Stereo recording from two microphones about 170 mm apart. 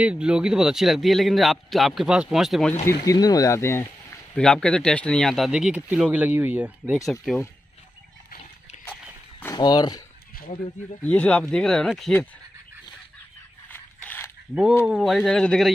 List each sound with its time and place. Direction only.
0.0 s speech: 5° right (ahead or behind)
2.9 s speech: 20° left (ahead or behind); by 7.4 s centre (ahead or behind)
9.4 s speech: 20° left (ahead or behind)
11.0 s speech: 10° left (ahead or behind)
13.7 s mechanisms: 10° left (ahead or behind)
14.5 s speech: 5° right (ahead or behind)